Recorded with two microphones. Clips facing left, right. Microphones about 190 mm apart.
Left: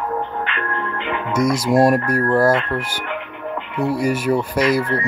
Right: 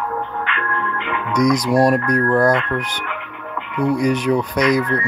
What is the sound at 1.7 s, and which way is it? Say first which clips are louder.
Speech: left 3 dB; 25° left (ahead or behind).